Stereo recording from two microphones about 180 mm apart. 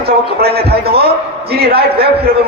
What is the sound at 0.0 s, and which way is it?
A man's voice, 60° right (ahead or behind).